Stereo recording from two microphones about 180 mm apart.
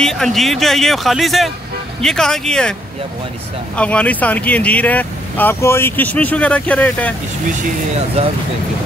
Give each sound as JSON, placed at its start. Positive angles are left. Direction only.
{"t": 0.0, "sound": "speech", "side_deg": 0}
{"t": 3.7, "sound": "speech", "side_deg": 5}
{"t": 8.2, "sound": "speech", "side_deg": -35}